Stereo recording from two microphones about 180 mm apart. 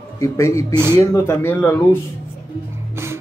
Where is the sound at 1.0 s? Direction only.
15° left (ahead or behind).